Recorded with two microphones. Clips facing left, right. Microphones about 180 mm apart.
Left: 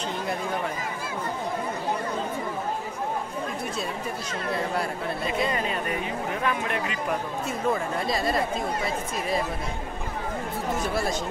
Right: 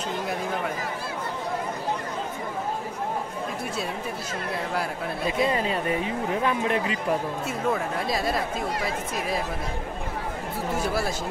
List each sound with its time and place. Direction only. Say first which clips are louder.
4.7 s speech: even; centre (ahead or behind)
6.4 s speech: right 3 dB; 30° right (ahead or behind)
7.4 s speech: left 3 dB; centre (ahead or behind)
10.9 s speech: left 1 dB; 5° right (ahead or behind)